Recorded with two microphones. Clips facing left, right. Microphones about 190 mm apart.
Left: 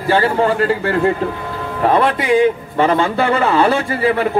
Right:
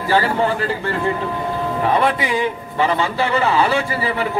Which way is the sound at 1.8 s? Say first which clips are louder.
Left 4 dB; 55° left (ahead or behind).